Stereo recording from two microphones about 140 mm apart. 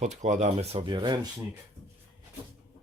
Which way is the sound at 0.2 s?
60° right (ahead or behind).